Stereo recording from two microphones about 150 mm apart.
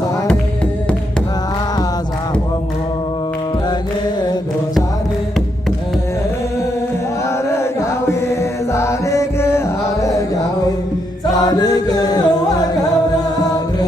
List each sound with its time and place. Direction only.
8.7 s music: 20° left (ahead or behind)
11.4 s music: 25° left (ahead or behind)